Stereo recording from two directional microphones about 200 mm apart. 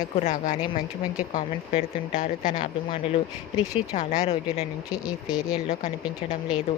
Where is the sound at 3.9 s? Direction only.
35° left (ahead or behind).